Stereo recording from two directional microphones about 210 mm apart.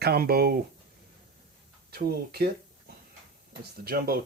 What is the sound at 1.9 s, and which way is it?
Speech, 50° right (ahead or behind).